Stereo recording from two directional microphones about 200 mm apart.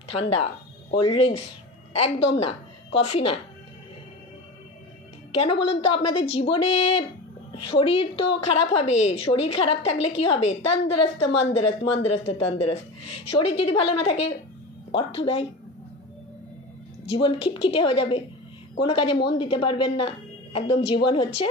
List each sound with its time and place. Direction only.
0.1 s a woman's voice: 30° left (ahead or behind)
5.3 s a woman's voice: 25° left (ahead or behind)
17.1 s a woman's voice: 25° left (ahead or behind)